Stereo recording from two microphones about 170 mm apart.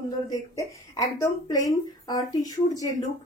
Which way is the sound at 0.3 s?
20° left (ahead or behind).